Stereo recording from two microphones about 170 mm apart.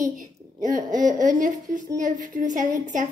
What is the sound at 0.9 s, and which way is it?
A woman's voice, 50° right (ahead or behind).